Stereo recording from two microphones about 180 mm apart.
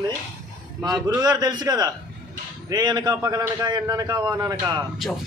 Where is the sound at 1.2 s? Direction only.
20° right (ahead or behind).